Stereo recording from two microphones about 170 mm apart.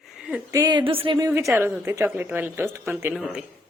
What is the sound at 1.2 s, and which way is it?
A woman's voice, 20° right (ahead or behind).